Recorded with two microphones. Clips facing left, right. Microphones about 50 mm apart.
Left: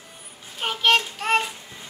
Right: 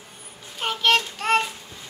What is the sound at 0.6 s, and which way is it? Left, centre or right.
Child singing, centre.